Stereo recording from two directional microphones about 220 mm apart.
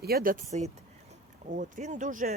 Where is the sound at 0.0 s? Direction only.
45° right (ahead or behind).